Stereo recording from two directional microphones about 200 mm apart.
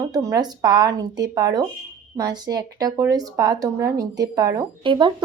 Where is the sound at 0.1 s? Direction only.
15° right (ahead or behind).